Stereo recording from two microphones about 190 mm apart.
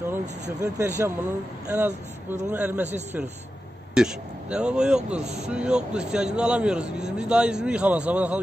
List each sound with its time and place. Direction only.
0.1 s speech: 15° right (ahead or behind)
3.9 s speech: 5° right (ahead or behind)
5.2 s speech: 35° right (ahead or behind)
5.5 s speech: 5° right (ahead or behind)